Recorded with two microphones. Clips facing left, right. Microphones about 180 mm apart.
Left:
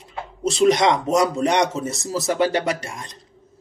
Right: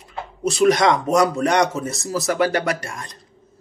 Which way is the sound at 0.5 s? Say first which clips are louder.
Right 1 dB; 20° left (ahead or behind).